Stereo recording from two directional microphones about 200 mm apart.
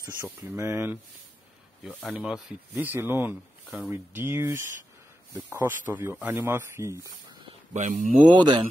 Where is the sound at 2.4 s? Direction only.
10° right (ahead or behind).